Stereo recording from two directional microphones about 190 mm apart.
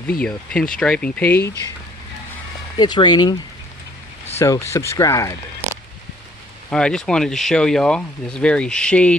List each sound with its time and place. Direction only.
0.2 s speech: 5° left (ahead or behind)
2.8 s speech: 25° left (ahead or behind)
4.4 s speech: 15° left (ahead or behind)
6.7 s speech: 5° left (ahead or behind)